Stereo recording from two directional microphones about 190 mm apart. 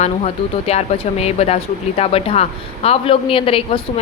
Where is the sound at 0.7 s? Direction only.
35° left (ahead or behind).